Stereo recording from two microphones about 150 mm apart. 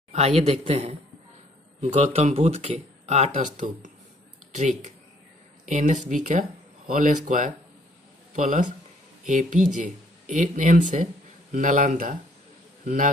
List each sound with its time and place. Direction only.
0.1 s speech: 45° right (ahead or behind)
9.2 s a man's voice: 55° right (ahead or behind)